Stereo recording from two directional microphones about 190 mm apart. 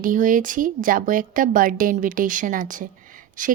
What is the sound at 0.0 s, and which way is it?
A woman's voice, 45° right (ahead or behind).